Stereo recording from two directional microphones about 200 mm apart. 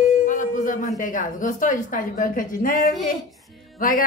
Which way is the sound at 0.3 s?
40° left (ahead or behind).